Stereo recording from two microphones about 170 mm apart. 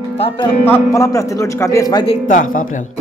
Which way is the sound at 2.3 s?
50° left (ahead or behind).